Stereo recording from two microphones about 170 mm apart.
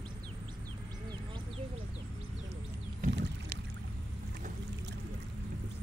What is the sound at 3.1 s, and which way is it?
Rowboat, 90° right.